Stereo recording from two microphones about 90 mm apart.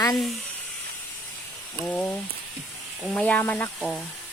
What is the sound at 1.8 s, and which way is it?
Speech, 20° left (ahead or behind).